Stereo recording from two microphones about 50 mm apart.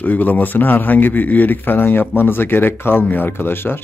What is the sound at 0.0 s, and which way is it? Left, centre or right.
A man's voice, left.